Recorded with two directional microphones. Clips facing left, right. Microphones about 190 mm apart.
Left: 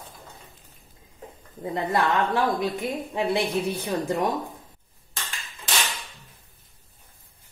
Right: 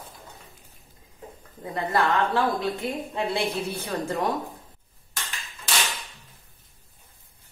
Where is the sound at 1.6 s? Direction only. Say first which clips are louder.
Left 1 dB; 20° left (ahead or behind).